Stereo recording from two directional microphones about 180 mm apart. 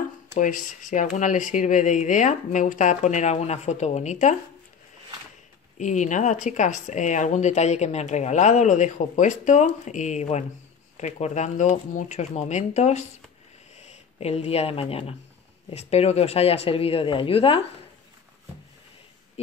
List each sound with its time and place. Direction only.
0.3 s speech: 45° left (ahead or behind)
5.8 s speech: 45° left (ahead or behind)